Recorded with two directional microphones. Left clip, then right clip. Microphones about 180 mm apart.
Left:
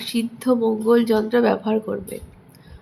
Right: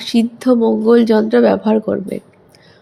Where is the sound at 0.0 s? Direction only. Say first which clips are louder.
Right 8 dB; 30° right (ahead or behind).